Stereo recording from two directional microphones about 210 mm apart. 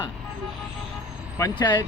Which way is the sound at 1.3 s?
20° left (ahead or behind).